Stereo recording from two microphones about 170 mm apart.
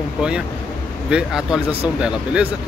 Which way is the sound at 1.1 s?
5° right (ahead or behind).